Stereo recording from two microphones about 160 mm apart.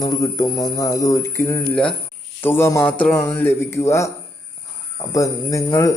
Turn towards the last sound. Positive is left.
turn(degrees=20)  # may be behind; listen again after turning